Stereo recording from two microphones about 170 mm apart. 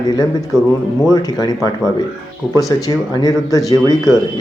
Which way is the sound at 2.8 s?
20° left (ahead or behind).